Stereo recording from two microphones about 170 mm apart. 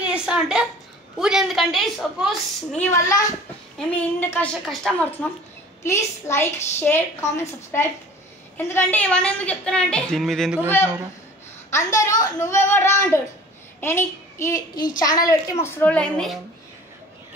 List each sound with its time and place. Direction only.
0.0 s a woman's voice: 5° right (ahead or behind)
2.8 s a woman's voice: 15° left (ahead or behind); by 5.0 s centre (ahead or behind)
5.9 s a woman's voice: 15° left (ahead or behind)
11.7 s a woman's voice: 20° left (ahead or behind)